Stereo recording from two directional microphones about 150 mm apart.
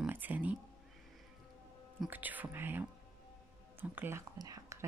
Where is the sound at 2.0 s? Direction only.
10° right (ahead or behind).